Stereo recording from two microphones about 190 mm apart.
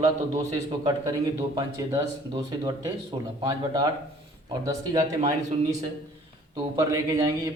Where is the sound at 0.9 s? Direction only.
20° right (ahead or behind).